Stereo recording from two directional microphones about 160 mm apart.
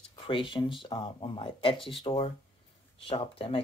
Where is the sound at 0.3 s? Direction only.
30° left (ahead or behind).